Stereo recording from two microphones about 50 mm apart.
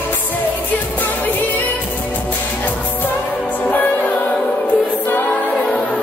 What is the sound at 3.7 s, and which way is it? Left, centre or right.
Music, left.